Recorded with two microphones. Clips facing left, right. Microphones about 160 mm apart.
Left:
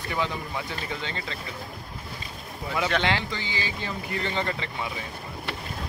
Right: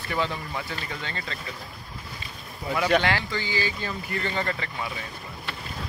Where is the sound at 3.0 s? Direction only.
20° left (ahead or behind).